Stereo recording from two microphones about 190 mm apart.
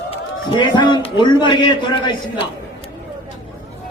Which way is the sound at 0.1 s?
25° left (ahead or behind).